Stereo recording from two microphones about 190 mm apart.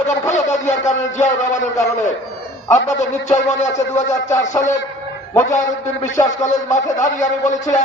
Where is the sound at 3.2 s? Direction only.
40° left (ahead or behind).